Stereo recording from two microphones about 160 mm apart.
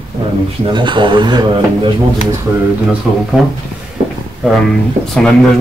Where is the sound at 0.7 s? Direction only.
30° right (ahead or behind).